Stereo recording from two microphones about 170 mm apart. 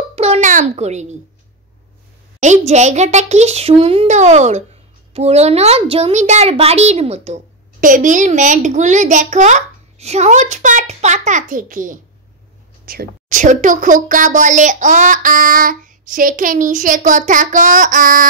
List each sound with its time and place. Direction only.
0.1 s a sound: 35° right (ahead or behind)
2.4 s a child's voice: 45° right (ahead or behind)
7.8 s a woman's voice: 50° right (ahead or behind)